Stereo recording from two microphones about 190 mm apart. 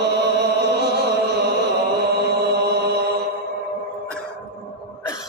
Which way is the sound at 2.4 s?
60° right (ahead or behind).